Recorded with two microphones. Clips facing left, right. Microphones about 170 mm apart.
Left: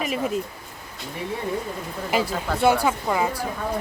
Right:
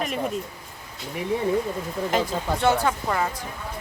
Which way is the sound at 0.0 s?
Centre (ahead or behind).